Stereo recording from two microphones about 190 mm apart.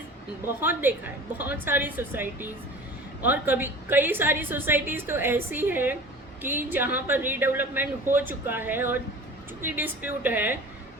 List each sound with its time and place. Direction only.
0.4 s a woman's voice: 10° right (ahead or behind)